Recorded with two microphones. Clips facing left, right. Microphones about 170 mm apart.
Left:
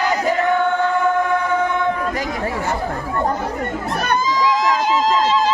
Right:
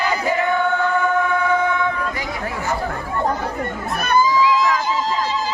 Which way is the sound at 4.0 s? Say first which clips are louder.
Right 3 dB; 90° left.